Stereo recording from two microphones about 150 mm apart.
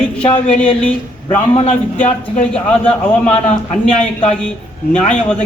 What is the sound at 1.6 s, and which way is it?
Speech, 50° left (ahead or behind).